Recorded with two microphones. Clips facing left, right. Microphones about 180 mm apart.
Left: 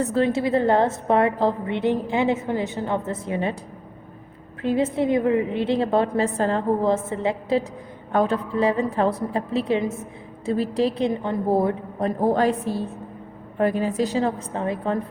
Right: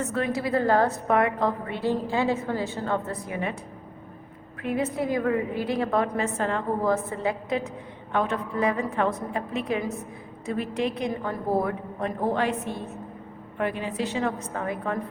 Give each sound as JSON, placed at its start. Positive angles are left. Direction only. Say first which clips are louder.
{"t": 0.0, "sound": "a woman's voice", "louder": "left 6 dB", "side_deg": 30}
{"t": 4.6, "sound": "a woman's voice", "louder": "left 5 dB", "side_deg": 30}